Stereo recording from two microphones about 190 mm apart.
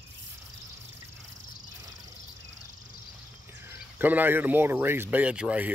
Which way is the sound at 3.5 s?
10° right (ahead or behind).